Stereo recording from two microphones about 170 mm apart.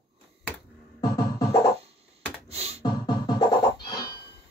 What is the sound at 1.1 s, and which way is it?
Music, 20° left (ahead or behind).